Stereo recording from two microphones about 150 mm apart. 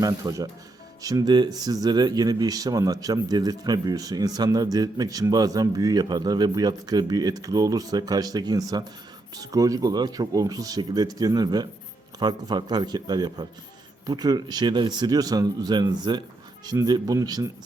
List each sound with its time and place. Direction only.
0.0 s speech: 20° right (ahead or behind)